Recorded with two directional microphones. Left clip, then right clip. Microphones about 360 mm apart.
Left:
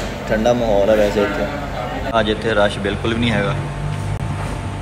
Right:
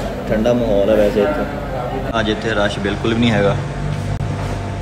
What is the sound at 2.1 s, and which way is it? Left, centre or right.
A man's voice, centre.